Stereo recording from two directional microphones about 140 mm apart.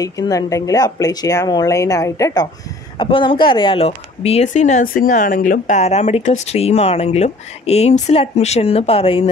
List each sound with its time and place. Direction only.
0.0 s speech: 25° left (ahead or behind)
3.0 s a woman's voice: 40° left (ahead or behind)